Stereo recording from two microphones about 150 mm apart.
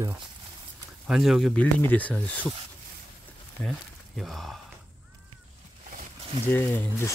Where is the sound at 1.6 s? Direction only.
10° left (ahead or behind).